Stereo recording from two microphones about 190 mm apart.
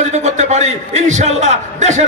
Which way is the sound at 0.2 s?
35° right (ahead or behind).